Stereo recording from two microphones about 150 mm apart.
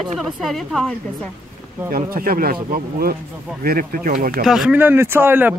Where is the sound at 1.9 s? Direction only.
70° right (ahead or behind).